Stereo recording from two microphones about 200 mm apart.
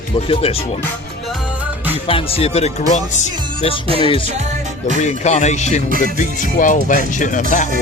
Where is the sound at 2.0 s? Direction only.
30° left (ahead or behind).